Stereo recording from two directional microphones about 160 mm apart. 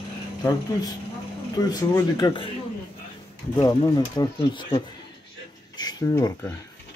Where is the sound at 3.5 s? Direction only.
25° left (ahead or behind).